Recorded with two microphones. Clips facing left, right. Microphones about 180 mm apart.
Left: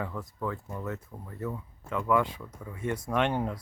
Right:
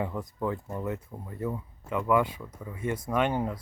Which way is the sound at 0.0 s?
20° right (ahead or behind).